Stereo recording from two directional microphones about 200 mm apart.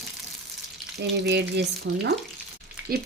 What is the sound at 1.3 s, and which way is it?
Speech, 55° right (ahead or behind).